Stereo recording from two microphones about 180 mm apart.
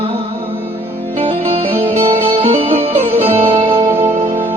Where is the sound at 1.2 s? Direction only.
30° right (ahead or behind).